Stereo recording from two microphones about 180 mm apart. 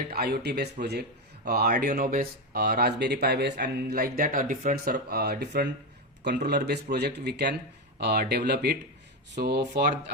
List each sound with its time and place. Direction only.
0.1 s a man's voice: 60° right (ahead or behind)